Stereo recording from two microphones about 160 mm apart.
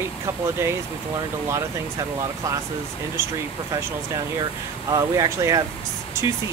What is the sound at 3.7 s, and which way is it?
Speech, 20° right (ahead or behind).